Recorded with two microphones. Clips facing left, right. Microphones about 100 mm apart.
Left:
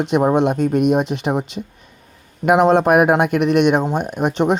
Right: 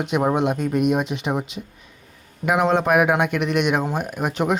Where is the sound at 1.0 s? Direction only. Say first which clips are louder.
Left 4 dB; centre (ahead or behind).